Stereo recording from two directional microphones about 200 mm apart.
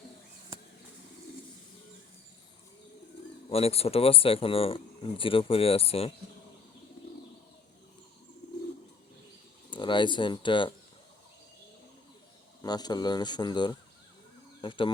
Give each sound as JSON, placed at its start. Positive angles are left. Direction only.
{"t": 3.5, "sound": "speech", "side_deg": 30}
{"t": 9.6, "sound": "speech", "side_deg": 25}
{"t": 12.6, "sound": "speech", "side_deg": 20}